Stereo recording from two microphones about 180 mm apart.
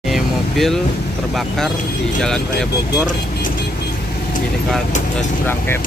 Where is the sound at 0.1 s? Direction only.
Centre (ahead or behind).